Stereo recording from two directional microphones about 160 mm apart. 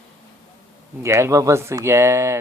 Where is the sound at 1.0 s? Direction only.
15° right (ahead or behind).